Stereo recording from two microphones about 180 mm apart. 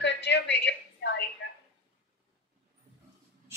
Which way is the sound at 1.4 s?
90° left.